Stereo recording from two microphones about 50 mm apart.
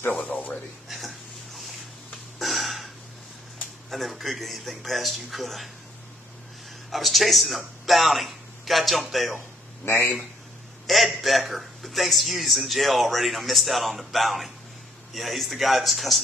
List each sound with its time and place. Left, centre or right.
0.3 s a sound: left
0.8 s a sound: centre
3.9 s a man's voice: centre
6.9 s speech: centre
9.9 s a man's voice: left
10.9 s a man's voice: centre